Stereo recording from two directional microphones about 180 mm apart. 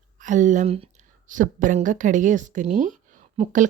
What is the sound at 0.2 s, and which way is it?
A woman's voice, 45° right (ahead or behind).